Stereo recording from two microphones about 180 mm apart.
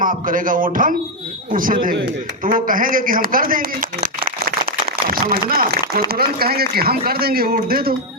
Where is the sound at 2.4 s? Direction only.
50° right (ahead or behind).